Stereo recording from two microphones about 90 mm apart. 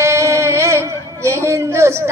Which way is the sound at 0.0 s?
30° right (ahead or behind).